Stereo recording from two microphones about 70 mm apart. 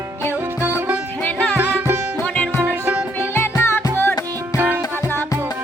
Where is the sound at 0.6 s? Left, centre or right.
Right.